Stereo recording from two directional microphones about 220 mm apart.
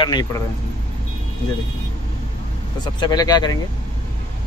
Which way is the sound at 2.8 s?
20° left (ahead or behind).